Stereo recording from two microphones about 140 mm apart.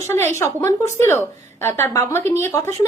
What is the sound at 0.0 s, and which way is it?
A woman's voice, 15° left (ahead or behind).